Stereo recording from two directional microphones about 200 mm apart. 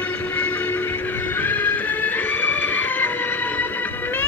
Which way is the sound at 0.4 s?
10° left (ahead or behind).